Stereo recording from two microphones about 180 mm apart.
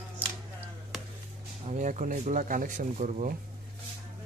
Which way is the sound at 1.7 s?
45° right (ahead or behind).